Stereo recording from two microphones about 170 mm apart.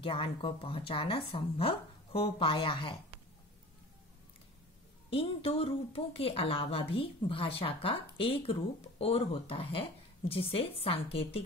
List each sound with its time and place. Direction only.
0.0 s speech: 30° left (ahead or behind)
5.1 s speech: 35° left (ahead or behind)